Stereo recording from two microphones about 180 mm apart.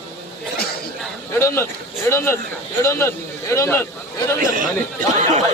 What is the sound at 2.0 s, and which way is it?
Speech, 15° left (ahead or behind).